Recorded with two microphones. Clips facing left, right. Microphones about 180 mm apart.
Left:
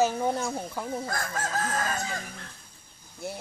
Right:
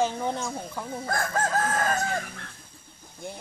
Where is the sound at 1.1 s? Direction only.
50° right (ahead or behind).